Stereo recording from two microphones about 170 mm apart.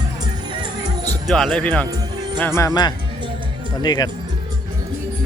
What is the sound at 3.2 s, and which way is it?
Music, 30° right (ahead or behind).